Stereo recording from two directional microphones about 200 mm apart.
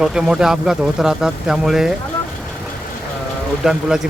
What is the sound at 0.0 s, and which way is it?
Speech, 5° right (ahead or behind).